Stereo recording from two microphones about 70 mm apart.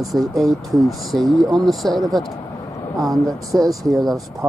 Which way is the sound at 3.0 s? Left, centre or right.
Right.